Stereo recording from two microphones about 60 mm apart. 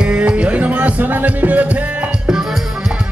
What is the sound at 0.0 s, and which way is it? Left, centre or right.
Music, centre.